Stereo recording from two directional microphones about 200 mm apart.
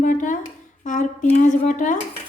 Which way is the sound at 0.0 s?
40° left (ahead or behind).